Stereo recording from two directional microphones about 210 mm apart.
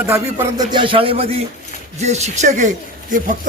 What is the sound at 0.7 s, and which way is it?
A man's voice, 25° right (ahead or behind).